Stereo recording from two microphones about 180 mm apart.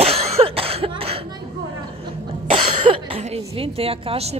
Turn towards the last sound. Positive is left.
turn(degrees=-35)  # may be behind; listen again after turning